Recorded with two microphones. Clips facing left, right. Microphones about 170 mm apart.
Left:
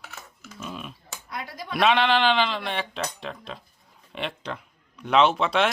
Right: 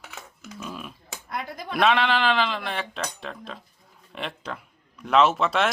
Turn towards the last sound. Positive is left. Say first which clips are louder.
# even
turn(degrees=0)  # may be behind; listen again after turning